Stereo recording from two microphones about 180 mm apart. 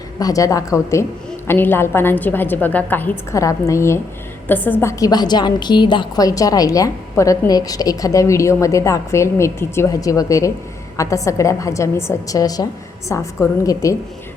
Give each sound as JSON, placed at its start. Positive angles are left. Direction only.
{"t": 0.2, "sound": "a woman's voice", "side_deg": 20}